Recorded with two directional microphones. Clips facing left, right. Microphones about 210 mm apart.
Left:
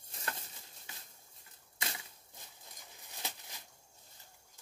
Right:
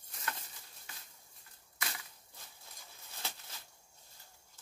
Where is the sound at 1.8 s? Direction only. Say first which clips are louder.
Left 1 dB; 25° left (ahead or behind).